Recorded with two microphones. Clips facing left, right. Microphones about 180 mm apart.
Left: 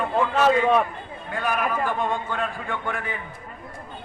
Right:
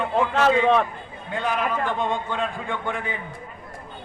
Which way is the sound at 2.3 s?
20° right (ahead or behind).